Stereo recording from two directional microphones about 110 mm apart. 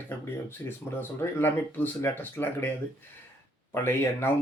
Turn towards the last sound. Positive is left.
turn(degrees=20)  # may be behind; listen again after turning